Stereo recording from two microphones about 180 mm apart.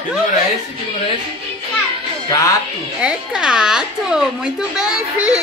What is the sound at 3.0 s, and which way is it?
A woman's voice, 5° right (ahead or behind).